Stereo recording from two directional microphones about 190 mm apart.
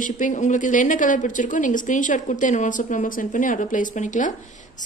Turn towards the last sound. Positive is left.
turn(degrees=40)  # may be behind; listen again after turning